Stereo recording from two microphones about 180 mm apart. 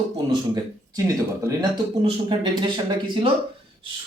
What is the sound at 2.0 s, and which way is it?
A man's voice, 25° right (ahead or behind).